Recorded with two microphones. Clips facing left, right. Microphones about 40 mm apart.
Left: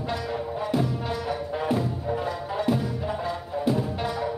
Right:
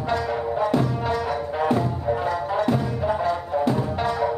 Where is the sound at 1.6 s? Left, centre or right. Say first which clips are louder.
Right 5 dB; centre.